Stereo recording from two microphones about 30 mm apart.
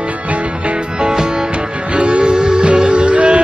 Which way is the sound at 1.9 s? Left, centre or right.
Right.